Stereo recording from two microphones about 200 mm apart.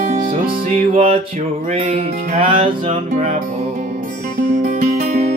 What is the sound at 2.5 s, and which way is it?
Music, 40° right (ahead or behind).